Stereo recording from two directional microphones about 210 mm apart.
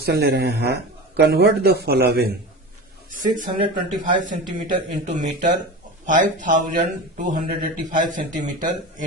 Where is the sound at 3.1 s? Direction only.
40° right (ahead or behind).